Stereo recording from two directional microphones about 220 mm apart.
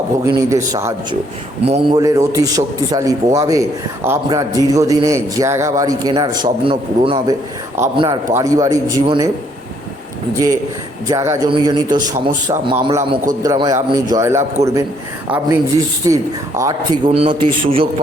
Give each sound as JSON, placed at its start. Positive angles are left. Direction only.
{"t": 0.3, "sound": "a man's voice", "side_deg": -15}
{"t": 1.6, "sound": "a man's voice", "side_deg": -25}
{"t": 11.1, "sound": "a man's voice", "side_deg": -15}
{"t": 17.1, "sound": "a man's voice", "side_deg": -25}